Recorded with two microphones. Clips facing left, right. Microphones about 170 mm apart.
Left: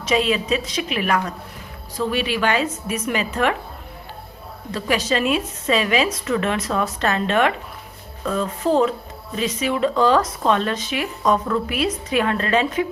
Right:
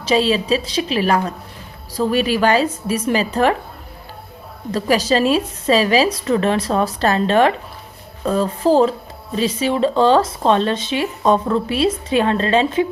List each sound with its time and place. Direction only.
0.0 s a woman's voice: 30° right (ahead or behind)
4.7 s a woman's voice: 35° right (ahead or behind)